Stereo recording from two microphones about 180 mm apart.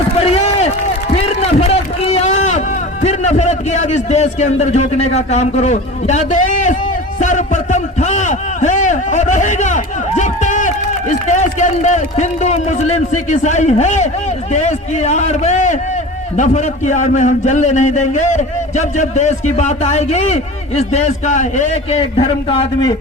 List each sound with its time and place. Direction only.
0.2 s run: 35° left (ahead or behind)
1.1 s a sound: 35° left (ahead or behind)
7.2 s a man's voice: 40° left (ahead or behind)